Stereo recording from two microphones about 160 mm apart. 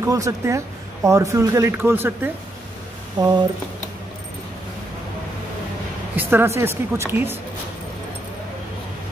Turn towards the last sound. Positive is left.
turn(degrees=-15)  # may be behind; listen again after turning